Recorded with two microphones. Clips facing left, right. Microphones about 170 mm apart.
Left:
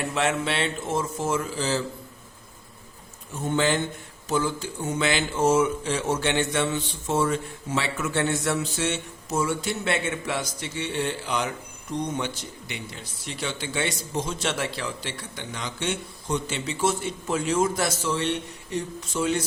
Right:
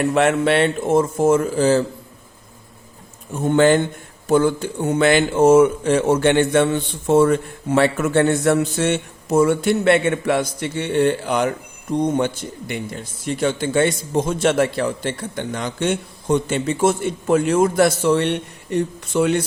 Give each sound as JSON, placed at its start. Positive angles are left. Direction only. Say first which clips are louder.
{"t": 0.0, "sound": "speech", "louder": "right 9 dB", "side_deg": -55}
{"t": 3.3, "sound": "speech", "louder": "right 9 dB", "side_deg": -55}